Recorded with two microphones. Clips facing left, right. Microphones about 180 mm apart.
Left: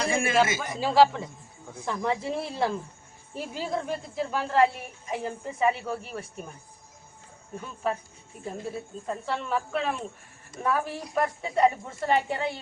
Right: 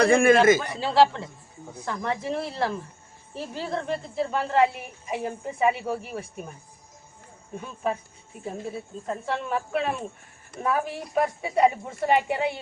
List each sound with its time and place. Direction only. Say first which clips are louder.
0.0 s a man's voice: right 10 dB; 55° right (ahead or behind)
0.6 s a woman's voice: even; 10° left (ahead or behind)
7.5 s a woman's voice: right 1 dB; centre (ahead or behind)